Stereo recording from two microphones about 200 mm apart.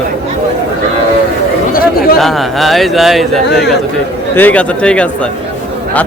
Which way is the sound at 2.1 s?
Centre (ahead or behind).